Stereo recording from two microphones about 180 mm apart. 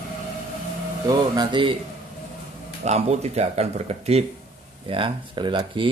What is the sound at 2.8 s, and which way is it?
Speech, 35° right (ahead or behind).